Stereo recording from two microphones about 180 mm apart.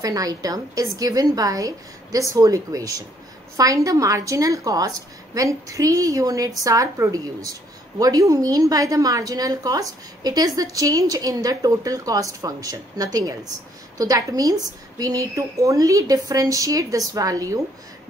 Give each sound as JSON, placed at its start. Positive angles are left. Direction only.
{"t": 0.0, "sound": "a woman's voice", "side_deg": -20}